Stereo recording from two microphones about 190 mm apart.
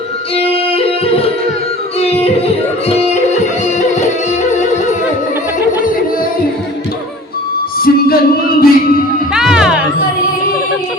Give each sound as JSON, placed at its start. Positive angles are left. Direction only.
{"t": 0.3, "sound": "yodeling", "side_deg": 30}
{"t": 2.9, "sound": "music", "side_deg": 35}
{"t": 4.5, "sound": "yodeling", "side_deg": 40}
{"t": 7.8, "sound": "music", "side_deg": 50}
{"t": 9.3, "sound": "music", "side_deg": -5}